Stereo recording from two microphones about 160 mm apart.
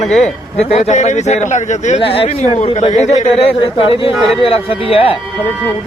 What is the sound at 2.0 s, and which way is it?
Speech, 35° left (ahead or behind).